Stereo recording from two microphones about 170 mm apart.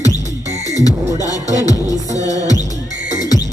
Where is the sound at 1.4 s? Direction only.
45° right (ahead or behind).